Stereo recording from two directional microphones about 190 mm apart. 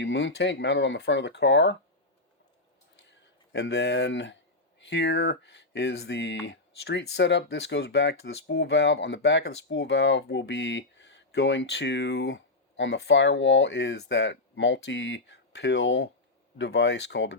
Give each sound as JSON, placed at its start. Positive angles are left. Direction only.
{"t": 0.0, "sound": "speech", "side_deg": 75}
{"t": 3.5, "sound": "speech", "side_deg": 65}